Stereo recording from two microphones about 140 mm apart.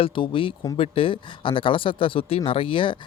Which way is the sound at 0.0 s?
40° left (ahead or behind).